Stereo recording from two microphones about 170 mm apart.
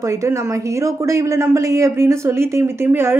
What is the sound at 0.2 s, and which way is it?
Speech, 20° right (ahead or behind).